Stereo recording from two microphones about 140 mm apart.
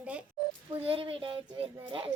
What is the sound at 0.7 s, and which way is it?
Speech, 40° right (ahead or behind).